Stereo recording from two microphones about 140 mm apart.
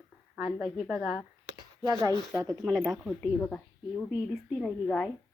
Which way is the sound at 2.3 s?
10° left (ahead or behind).